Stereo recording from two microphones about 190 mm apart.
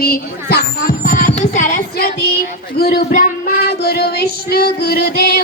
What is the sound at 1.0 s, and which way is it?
Music, 40° left (ahead or behind).